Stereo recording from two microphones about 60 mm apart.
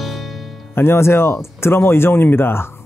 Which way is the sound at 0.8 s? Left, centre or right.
Left.